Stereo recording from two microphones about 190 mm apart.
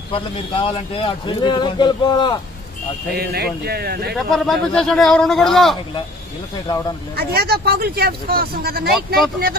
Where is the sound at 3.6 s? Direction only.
55° right (ahead or behind).